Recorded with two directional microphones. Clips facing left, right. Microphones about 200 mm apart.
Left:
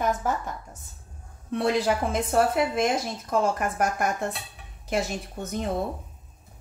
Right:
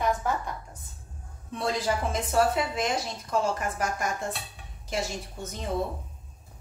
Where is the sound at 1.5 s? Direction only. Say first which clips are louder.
Left 5 dB; 65° left (ahead or behind).